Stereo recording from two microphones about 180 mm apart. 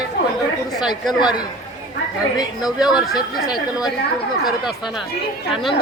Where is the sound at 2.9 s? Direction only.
Centre (ahead or behind).